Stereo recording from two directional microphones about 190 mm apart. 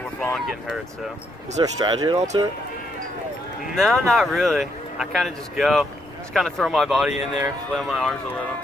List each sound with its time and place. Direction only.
0.2 s speech: centre (ahead or behind)
1.6 s speech: 20° right (ahead or behind)
3.7 s speech: centre (ahead or behind)